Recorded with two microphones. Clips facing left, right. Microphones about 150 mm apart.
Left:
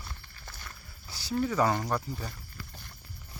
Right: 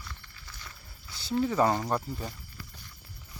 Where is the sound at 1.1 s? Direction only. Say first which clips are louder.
Right 2 dB; 25° right (ahead or behind).